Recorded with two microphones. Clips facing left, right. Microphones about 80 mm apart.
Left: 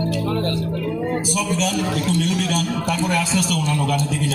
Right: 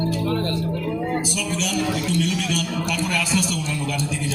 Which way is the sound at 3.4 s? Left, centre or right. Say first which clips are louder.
Left 4 dB; left.